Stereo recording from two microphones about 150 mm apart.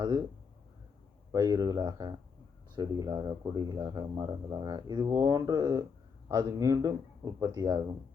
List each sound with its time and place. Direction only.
1.3 s speech: 25° right (ahead or behind)